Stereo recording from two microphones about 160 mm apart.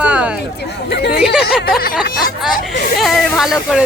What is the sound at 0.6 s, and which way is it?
Speech, 90° left.